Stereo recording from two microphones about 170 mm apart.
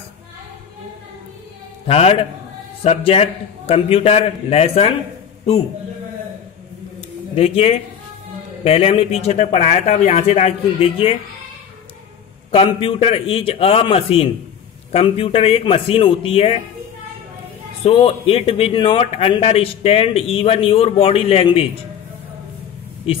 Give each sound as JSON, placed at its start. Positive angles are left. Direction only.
{"t": 1.9, "sound": "a man's voice", "side_deg": 35}
{"t": 7.0, "sound": "a sound", "side_deg": 35}
{"t": 8.6, "sound": "a man's voice", "side_deg": 35}
{"t": 12.4, "sound": "a man's voice", "side_deg": 30}
{"t": 17.8, "sound": "a man's voice", "side_deg": 35}